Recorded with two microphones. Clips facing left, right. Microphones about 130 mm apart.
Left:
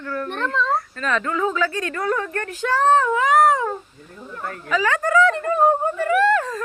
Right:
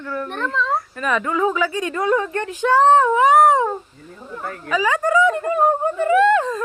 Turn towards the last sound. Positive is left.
turn(degrees=-20)  # may be behind; listen again after turning